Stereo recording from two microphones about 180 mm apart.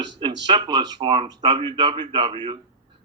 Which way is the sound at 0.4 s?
25° right (ahead or behind).